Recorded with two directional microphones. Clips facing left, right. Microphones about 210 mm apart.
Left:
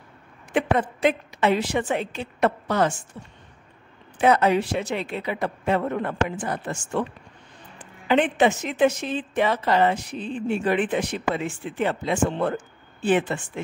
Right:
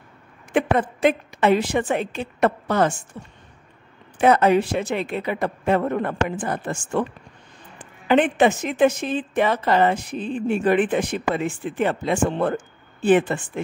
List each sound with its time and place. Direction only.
0.5 s a woman's voice: 50° right (ahead or behind)
4.2 s a woman's voice: 50° right (ahead or behind)